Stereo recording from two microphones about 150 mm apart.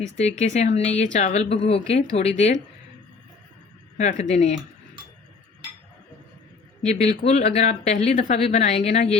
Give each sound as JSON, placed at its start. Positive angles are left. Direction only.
{"t": 0.2, "sound": "a woman's voice", "side_deg": 50}
{"t": 3.9, "sound": "a woman's voice", "side_deg": 50}
{"t": 7.3, "sound": "a woman's voice", "side_deg": 45}